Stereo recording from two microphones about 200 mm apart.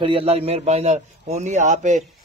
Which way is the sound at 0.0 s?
25° right (ahead or behind).